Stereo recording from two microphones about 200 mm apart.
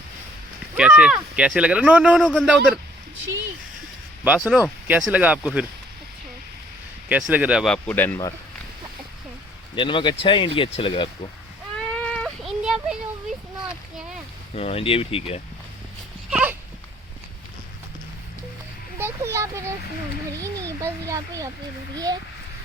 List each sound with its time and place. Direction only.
0.8 s speech: 5° right (ahead or behind)
4.2 s speech: 5° right (ahead or behind)
7.1 s speech: 5° right (ahead or behind); by 8.3 s 10° left (ahead or behind)
9.7 s speech: 25° left (ahead or behind)
12.0 s a sound: 5° left (ahead or behind)
14.5 s speech: 30° left (ahead or behind)
16.3 s dog: 10° right (ahead or behind)
18.9 s a sound: 15° right (ahead or behind)
20.4 s a child's voice: 15° right (ahead or behind)